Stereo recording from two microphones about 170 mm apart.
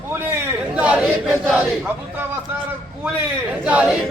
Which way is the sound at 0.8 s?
10° right (ahead or behind).